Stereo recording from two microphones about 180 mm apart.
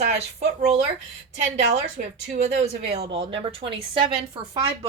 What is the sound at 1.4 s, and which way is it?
A woman's voice, 40° right (ahead or behind).